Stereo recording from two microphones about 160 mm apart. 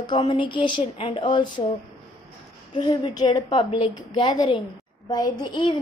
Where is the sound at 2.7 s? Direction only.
30° left (ahead or behind).